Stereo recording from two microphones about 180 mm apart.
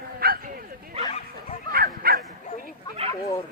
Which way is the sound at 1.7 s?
55° right (ahead or behind).